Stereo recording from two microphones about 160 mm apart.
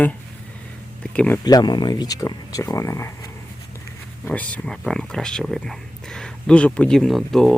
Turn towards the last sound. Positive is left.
turn(degrees=5)  # may be behind; listen again after turning